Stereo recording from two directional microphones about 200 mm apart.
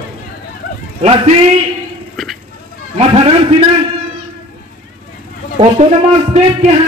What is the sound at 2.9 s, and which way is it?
Speech, 30° right (ahead or behind).